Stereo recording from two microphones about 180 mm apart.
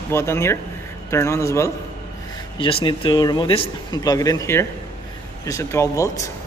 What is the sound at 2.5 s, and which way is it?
Speech, 30° left (ahead or behind).